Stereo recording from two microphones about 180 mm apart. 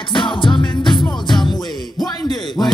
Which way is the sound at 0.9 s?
Centre (ahead or behind).